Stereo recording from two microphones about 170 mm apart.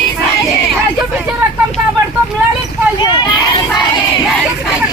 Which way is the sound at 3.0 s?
25° left (ahead or behind).